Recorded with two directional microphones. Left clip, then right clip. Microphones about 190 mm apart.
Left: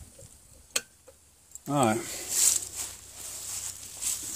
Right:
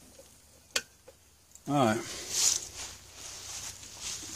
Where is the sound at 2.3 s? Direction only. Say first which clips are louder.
Left 1 dB; 30° left (ahead or behind).